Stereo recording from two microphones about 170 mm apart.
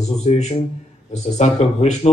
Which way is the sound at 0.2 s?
40° left (ahead or behind).